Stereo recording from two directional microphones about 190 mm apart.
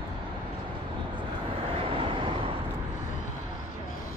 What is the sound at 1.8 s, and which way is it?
Vehicle, 30° right (ahead or behind).